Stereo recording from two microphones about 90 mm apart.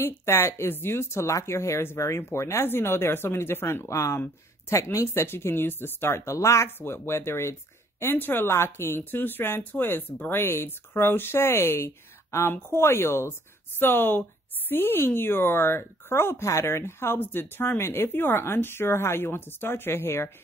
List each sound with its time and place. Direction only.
0.0 s speech: 30° left (ahead or behind)